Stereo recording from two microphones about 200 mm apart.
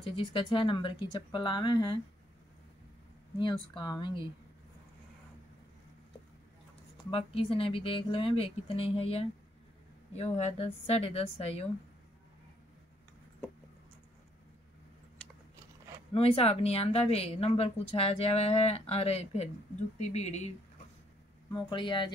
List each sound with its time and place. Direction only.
0.0 s speech: 25° left (ahead or behind)
3.7 s speech: 20° left (ahead or behind)
7.1 s speech: 30° left (ahead or behind)
16.1 s speech: 30° left (ahead or behind)
21.5 s speech: 20° left (ahead or behind)